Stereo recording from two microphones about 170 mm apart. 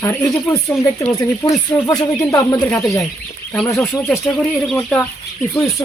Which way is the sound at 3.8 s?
Centre (ahead or behind).